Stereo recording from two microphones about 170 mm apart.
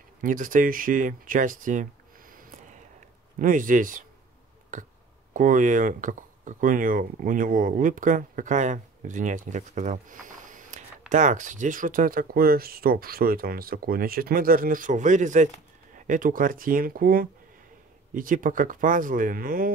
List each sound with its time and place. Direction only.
0.2 s speech: 50° right (ahead or behind)